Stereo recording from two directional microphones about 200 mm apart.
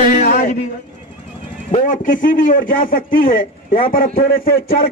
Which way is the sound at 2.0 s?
45° left (ahead or behind).